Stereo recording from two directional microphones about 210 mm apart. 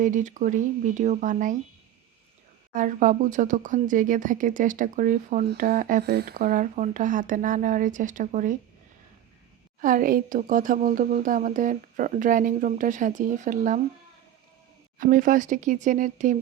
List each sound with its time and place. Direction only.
0.0 s speech: 35° right (ahead or behind)
2.7 s speech: 40° right (ahead or behind)
9.8 s speech: 40° right (ahead or behind)
14.9 s speech: 40° right (ahead or behind)